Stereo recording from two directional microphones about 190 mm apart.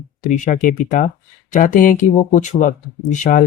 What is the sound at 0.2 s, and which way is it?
Speech, 40° left (ahead or behind).